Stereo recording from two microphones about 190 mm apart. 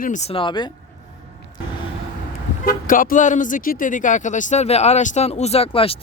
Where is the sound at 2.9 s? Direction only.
45° left (ahead or behind); by 6.0 s 30° left (ahead or behind).